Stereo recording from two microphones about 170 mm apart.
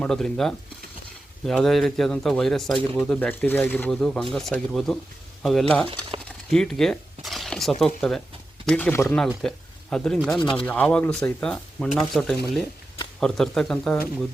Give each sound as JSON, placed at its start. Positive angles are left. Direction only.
{"t": 0.0, "sound": "speech", "side_deg": 5}
{"t": 10.3, "sound": "speech", "side_deg": 30}
{"t": 10.7, "sound": "speech", "side_deg": 5}